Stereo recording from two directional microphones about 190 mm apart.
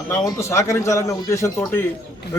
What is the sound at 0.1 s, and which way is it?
A man's voice, 15° left (ahead or behind).